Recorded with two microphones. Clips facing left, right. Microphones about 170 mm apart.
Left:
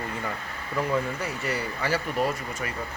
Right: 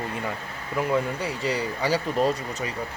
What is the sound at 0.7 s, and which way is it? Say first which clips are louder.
Speech: right 2 dB; 15° right (ahead or behind).